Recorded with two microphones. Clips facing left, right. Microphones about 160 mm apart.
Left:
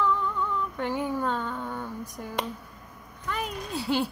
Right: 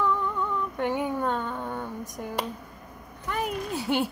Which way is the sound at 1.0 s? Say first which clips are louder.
Right 1 dB; 15° right (ahead or behind).